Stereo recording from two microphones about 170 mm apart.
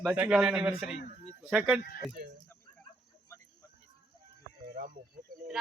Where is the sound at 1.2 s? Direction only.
5° right (ahead or behind).